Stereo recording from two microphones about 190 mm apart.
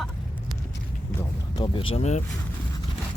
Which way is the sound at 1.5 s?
25° left (ahead or behind).